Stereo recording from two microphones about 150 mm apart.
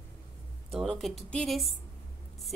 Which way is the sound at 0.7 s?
Centre (ahead or behind).